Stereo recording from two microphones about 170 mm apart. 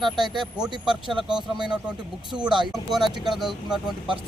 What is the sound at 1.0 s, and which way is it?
Speech, 25° right (ahead or behind).